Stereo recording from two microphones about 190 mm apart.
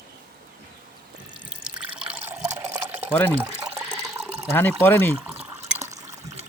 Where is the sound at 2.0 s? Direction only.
5° right (ahead or behind).